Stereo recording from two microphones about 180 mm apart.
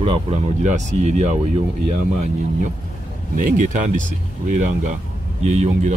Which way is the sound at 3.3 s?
45° right (ahead or behind).